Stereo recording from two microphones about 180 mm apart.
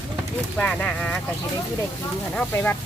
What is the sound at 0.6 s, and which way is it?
Speech, 10° left (ahead or behind).